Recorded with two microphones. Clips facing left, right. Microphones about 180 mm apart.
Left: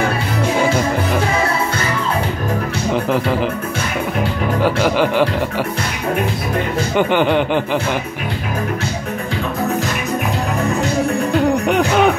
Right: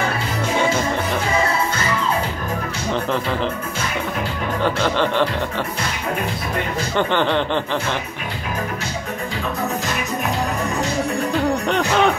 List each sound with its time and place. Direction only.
4.6 s speech: 10° left (ahead or behind)
7.0 s speech: 10° left (ahead or behind)
11.6 s music: 10° left (ahead or behind)